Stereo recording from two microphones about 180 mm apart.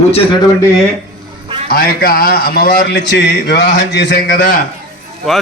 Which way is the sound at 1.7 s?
55° left (ahead or behind).